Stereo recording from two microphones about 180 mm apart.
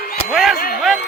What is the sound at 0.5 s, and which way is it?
Speech, 55° left (ahead or behind).